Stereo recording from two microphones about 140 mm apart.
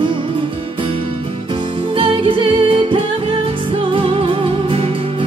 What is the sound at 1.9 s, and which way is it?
Music, 40° right (ahead or behind).